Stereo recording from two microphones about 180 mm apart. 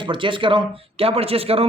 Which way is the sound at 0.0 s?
30° right (ahead or behind).